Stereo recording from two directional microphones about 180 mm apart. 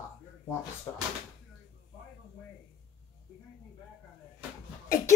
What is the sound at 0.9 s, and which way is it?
Speech, 15° left (ahead or behind).